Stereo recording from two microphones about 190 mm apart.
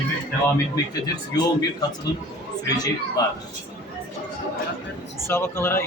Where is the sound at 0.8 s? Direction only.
20° left (ahead or behind).